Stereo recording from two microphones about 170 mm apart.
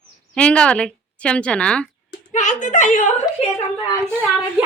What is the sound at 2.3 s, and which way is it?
Speech, 45° left (ahead or behind).